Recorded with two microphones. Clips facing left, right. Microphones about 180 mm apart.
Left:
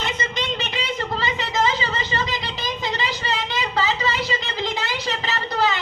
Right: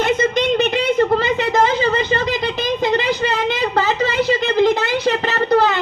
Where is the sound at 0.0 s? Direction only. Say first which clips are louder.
Right 11 dB; 55° right (ahead or behind).